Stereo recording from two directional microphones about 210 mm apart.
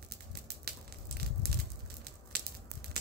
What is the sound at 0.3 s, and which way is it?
Crushing, 50° right (ahead or behind).